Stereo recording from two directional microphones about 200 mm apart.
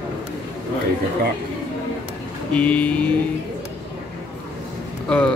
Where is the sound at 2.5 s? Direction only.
5° left (ahead or behind).